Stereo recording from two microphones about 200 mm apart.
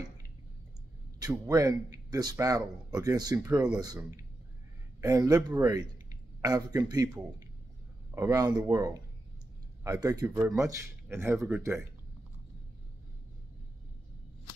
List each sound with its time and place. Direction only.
1.2 s a man's voice: 15° right (ahead or behind)
5.0 s a man's voice: 20° right (ahead or behind)